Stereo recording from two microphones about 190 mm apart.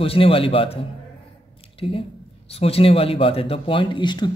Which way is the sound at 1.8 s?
30° left (ahead or behind).